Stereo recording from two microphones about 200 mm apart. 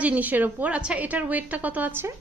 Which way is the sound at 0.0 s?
10° right (ahead or behind).